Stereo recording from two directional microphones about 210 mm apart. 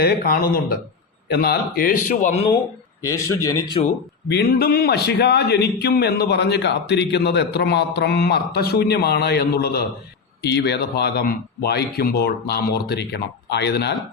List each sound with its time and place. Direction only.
0.0 s a man's voice: 45° left (ahead or behind)
3.0 s speech: 15° left (ahead or behind)
4.3 s a man's voice: 50° left (ahead or behind)